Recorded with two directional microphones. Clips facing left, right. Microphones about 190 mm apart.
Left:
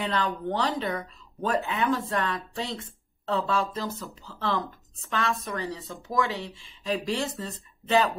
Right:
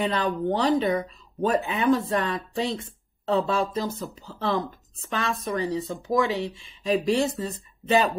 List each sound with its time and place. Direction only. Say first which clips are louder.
0.0 s speech: right 4 dB; 15° right (ahead or behind)